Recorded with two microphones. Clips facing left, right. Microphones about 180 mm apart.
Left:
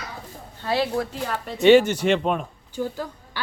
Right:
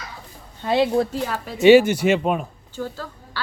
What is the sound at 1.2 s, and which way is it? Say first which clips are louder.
Speech: right 2 dB; 5° right (ahead or behind).